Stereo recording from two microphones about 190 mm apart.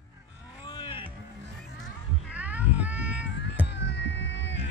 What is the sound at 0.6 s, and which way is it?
Music, 25° left (ahead or behind).